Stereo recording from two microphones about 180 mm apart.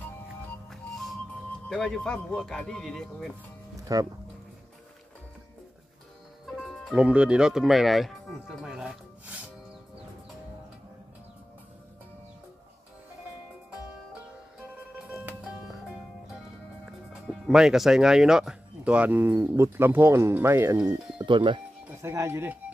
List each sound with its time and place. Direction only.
0.7 s music: centre (ahead or behind)
1.7 s speech: 5° left (ahead or behind)
3.8 s speech: 20° right (ahead or behind)
6.4 s speech: centre (ahead or behind)
15.0 s music: 5° right (ahead or behind)
16.8 s speech: 5° right (ahead or behind)
21.2 s speech: 25° right (ahead or behind)
21.8 s speech: 15° right (ahead or behind)